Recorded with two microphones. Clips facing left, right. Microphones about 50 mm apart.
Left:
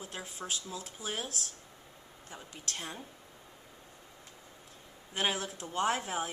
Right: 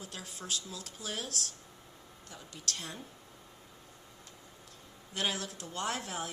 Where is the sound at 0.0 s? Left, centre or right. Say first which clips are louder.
Left 3 dB; left.